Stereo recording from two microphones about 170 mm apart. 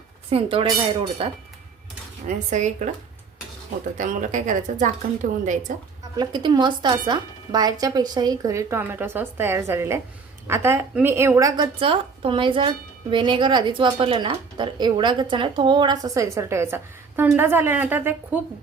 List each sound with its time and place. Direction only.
0.3 s speech: 35° right (ahead or behind)
2.2 s a woman's voice: 45° right (ahead or behind)
3.9 s a woman's voice: 45° right (ahead or behind)
6.1 s a woman's voice: 25° right (ahead or behind)